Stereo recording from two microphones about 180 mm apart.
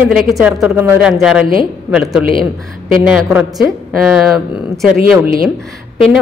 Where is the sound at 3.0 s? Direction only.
5° right (ahead or behind).